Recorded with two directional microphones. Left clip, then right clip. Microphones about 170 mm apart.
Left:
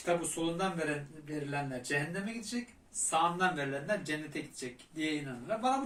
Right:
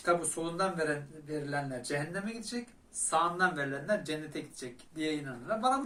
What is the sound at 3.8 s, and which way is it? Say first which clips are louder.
Speech: right 2 dB; 10° right (ahead or behind).